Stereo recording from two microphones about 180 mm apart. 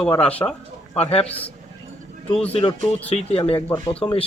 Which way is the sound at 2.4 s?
35° left (ahead or behind).